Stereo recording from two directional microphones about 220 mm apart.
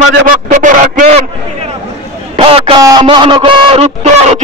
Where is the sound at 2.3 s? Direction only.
25° right (ahead or behind).